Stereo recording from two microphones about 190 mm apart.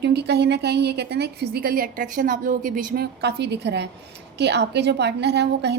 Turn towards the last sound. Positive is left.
turn(degrees=-60)  # may be behind; listen again after turning